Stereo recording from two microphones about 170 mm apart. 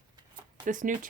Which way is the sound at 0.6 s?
50° right (ahead or behind).